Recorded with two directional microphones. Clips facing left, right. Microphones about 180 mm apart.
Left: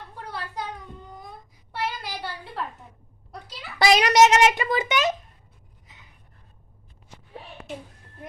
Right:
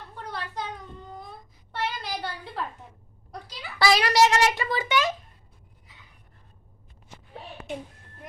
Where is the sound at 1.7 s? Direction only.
5° left (ahead or behind).